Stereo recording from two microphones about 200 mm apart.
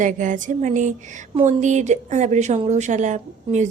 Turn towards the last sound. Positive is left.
turn(degrees=-35)  # may be behind; listen again after turning